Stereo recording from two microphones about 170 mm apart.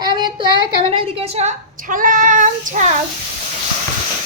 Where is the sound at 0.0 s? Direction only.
25° right (ahead or behind).